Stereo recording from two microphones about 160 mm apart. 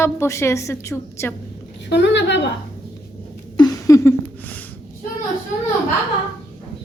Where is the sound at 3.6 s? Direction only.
20° left (ahead or behind).